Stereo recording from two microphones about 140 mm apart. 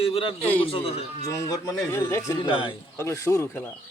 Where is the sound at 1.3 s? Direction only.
25° left (ahead or behind).